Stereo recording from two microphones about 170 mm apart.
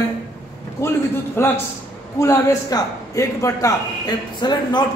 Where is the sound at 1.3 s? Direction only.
15° left (ahead or behind).